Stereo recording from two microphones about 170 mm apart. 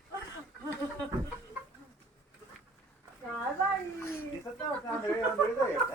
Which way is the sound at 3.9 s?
15° left (ahead or behind).